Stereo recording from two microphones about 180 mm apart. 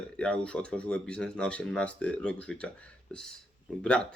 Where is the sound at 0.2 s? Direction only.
5° left (ahead or behind).